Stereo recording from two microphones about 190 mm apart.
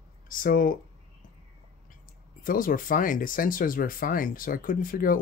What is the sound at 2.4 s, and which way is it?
Speech, 45° left (ahead or behind).